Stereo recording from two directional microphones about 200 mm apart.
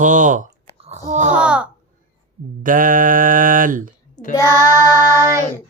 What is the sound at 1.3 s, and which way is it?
Speech, 5° right (ahead or behind).